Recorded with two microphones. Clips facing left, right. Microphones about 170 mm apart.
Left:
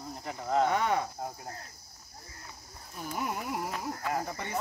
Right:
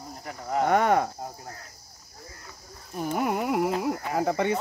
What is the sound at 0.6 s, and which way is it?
Speech, 55° right (ahead or behind).